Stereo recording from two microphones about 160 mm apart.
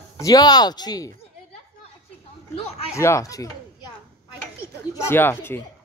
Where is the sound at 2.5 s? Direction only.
40° left (ahead or behind).